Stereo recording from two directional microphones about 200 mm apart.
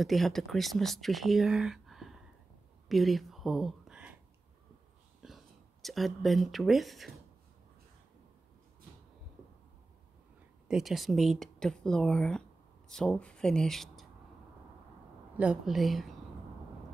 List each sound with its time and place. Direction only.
0.0 s speech: centre (ahead or behind)
2.9 s a sound: centre (ahead or behind)
5.2 s speech: centre (ahead or behind)
10.7 s speech: centre (ahead or behind)
15.3 s speech: 5° right (ahead or behind)